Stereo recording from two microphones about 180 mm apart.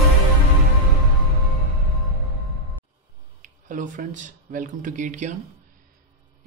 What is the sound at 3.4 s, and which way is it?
Speech, 45° right (ahead or behind).